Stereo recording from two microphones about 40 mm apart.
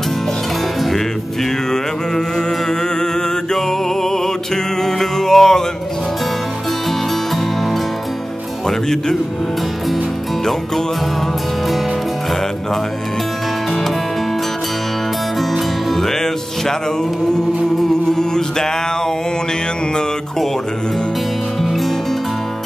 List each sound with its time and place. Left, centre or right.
1.7 s music: centre
3.5 s music: centre
8.6 s music: centre
15.5 s music: centre
18.0 s music: centre